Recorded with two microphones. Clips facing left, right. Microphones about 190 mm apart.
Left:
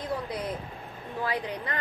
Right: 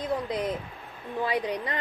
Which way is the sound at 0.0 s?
20° right (ahead or behind).